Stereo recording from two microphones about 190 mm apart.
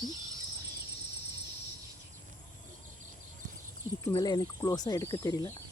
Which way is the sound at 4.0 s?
20° left (ahead or behind).